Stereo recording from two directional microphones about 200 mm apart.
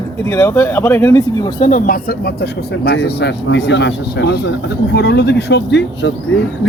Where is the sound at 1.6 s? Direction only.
40° left (ahead or behind).